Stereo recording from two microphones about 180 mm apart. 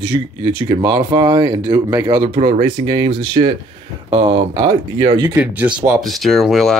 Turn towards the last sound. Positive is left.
turn(degrees=0)  # may be behind; listen again after turning